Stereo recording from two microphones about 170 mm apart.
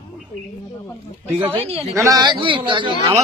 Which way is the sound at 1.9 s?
20° right (ahead or behind).